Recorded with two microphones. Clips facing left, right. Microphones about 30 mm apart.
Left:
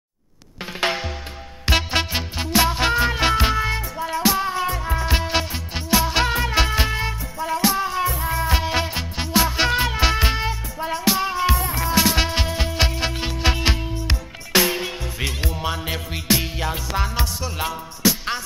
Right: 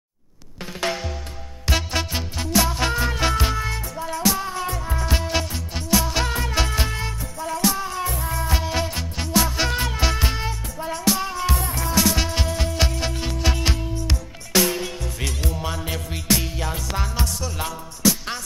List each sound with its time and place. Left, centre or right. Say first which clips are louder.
0.7 s music: left 3 dB; left